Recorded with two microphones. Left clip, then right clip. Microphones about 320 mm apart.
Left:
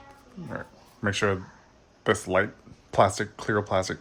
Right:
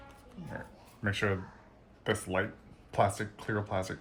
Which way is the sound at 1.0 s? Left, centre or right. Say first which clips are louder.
Left 6 dB; centre.